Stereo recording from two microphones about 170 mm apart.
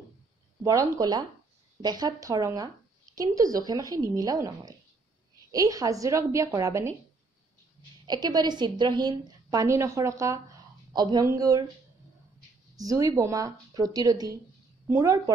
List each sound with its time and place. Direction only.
0.7 s a woman's voice: 20° right (ahead or behind)
8.1 s a woman's voice: 25° right (ahead or behind)
12.7 s a woman's voice: 20° right (ahead or behind)